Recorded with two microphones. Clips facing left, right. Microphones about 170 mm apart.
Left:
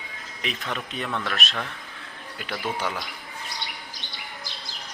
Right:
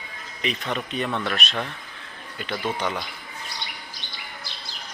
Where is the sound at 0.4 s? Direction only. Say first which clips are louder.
Right 4 dB; centre (ahead or behind).